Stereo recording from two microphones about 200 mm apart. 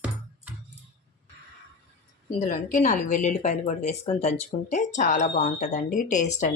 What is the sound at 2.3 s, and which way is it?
Speech, 40° left (ahead or behind).